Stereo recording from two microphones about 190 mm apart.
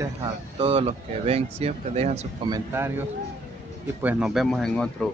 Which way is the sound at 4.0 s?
5° right (ahead or behind).